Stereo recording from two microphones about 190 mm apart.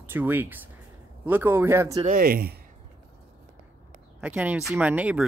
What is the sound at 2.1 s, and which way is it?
Speech, 50° right (ahead or behind).